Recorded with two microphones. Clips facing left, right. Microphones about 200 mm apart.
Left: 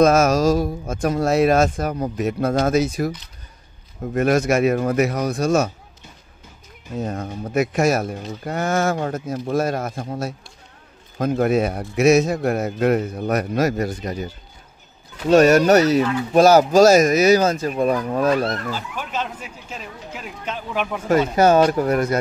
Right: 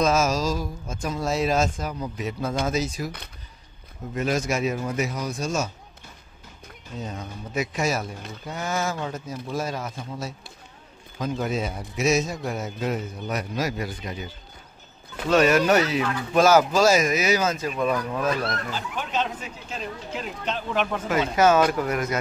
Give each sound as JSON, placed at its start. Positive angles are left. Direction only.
{"t": 0.0, "sound": "speech", "side_deg": 60}
{"t": 4.1, "sound": "speech", "side_deg": 60}
{"t": 7.0, "sound": "speech", "side_deg": 55}
{"t": 18.7, "sound": "speech", "side_deg": 10}
{"t": 21.1, "sound": "speech", "side_deg": 35}